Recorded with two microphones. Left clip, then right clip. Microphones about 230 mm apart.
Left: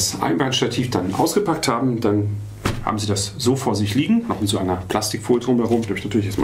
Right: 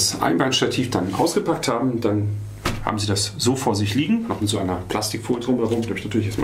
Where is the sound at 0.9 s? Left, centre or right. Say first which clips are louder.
Left 3 dB; left.